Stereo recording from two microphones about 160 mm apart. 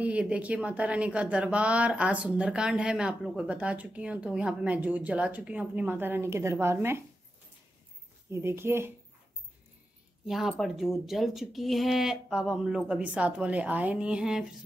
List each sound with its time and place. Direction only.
0.0 s speech: 10° right (ahead or behind)
8.3 s speech: 15° right (ahead or behind)
10.2 s speech: centre (ahead or behind)